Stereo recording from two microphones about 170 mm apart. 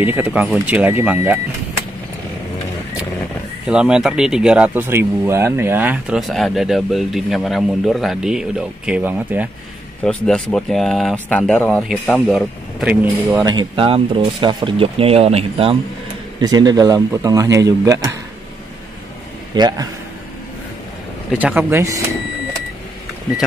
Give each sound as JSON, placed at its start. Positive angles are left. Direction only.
{"t": 0.0, "sound": "speech", "side_deg": -10}
{"t": 3.6, "sound": "speech", "side_deg": -5}
{"t": 10.0, "sound": "speech", "side_deg": 5}
{"t": 13.0, "sound": "speech", "side_deg": -10}
{"t": 13.5, "sound": "speech", "side_deg": -30}
{"t": 19.5, "sound": "speech", "side_deg": -25}
{"t": 21.3, "sound": "speech", "side_deg": -5}